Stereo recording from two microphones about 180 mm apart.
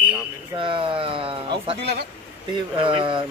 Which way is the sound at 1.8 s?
65° right (ahead or behind).